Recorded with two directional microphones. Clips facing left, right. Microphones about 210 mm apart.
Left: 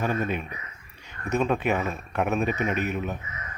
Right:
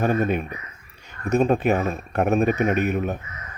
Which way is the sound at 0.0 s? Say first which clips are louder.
Right 6 dB; 50° right (ahead or behind).